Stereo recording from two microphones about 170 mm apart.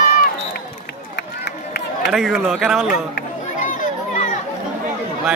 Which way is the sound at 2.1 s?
Centre (ahead or behind).